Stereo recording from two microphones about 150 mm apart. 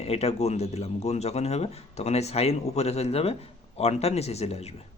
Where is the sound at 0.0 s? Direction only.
45° left (ahead or behind).